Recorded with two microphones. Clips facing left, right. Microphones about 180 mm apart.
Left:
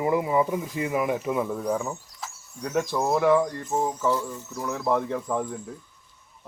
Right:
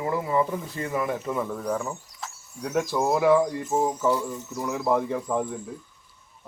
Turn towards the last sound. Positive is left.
turn(degrees=-5)  # may be behind; listen again after turning